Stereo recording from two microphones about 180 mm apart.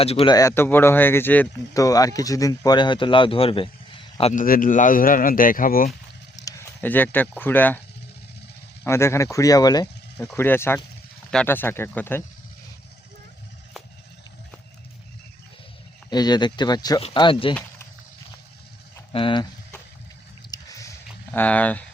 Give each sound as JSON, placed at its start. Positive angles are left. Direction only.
{"t": 0.0, "sound": "speech", "side_deg": 30}
{"t": 4.4, "sound": "speech", "side_deg": 50}
{"t": 6.3, "sound": "speech", "side_deg": 15}
{"t": 8.8, "sound": "speech", "side_deg": 15}
{"t": 16.0, "sound": "speech", "side_deg": 25}
{"t": 19.1, "sound": "speech", "side_deg": 30}
{"t": 20.5, "sound": "a sound", "side_deg": 20}
{"t": 21.3, "sound": "speech", "side_deg": 10}